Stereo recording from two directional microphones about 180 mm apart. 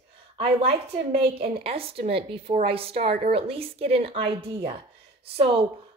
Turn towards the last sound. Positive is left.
turn(degrees=-30)  # may be behind; listen again after turning